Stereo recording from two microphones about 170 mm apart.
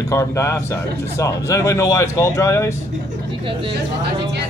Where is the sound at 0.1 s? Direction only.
20° left (ahead or behind).